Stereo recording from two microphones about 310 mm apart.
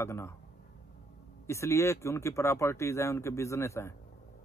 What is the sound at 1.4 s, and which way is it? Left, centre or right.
A man's voice, centre.